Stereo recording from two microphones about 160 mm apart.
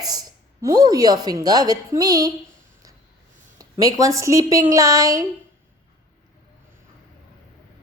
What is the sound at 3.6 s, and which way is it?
A woman's voice, 20° right (ahead or behind).